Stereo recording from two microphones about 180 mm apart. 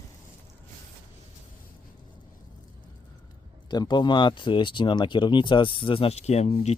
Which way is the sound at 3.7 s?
25° left (ahead or behind).